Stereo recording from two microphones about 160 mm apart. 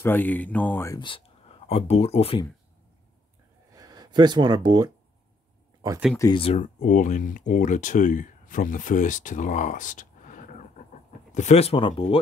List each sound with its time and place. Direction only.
0.0 s speech: 10° left (ahead or behind)
0.9 s speech: 30° left (ahead or behind)
3.7 s speech: 25° right (ahead or behind)
6.3 s speech: 35° left (ahead or behind)
6.6 s speech: 55° left (ahead or behind); by 12.2 s 35° left (ahead or behind)